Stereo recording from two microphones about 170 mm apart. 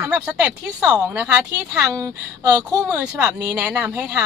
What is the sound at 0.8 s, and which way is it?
Speech, 20° right (ahead or behind).